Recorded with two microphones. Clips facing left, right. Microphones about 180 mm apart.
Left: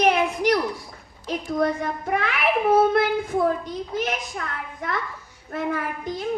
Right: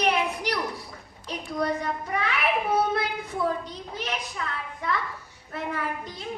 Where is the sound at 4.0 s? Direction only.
45° left (ahead or behind).